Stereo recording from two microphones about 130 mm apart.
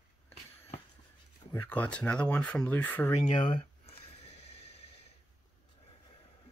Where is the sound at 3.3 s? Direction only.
40° left (ahead or behind).